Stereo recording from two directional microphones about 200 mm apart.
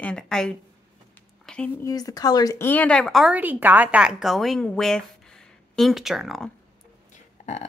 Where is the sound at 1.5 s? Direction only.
Centre (ahead or behind).